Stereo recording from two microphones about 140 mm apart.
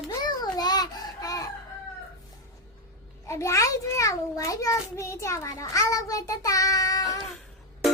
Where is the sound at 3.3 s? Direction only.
20° left (ahead or behind).